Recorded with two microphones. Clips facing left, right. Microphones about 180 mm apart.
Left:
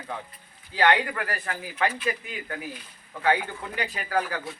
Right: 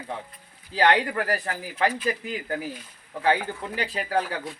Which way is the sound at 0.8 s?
35° right (ahead or behind).